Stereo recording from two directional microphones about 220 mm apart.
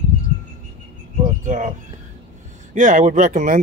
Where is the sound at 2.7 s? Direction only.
35° right (ahead or behind).